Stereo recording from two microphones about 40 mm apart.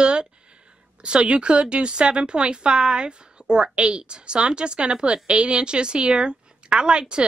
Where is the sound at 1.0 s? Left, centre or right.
Right.